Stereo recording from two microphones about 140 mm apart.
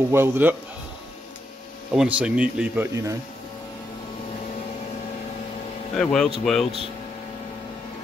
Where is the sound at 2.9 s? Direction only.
25° right (ahead or behind).